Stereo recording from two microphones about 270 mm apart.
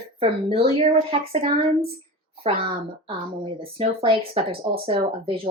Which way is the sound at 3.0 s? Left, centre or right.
Centre.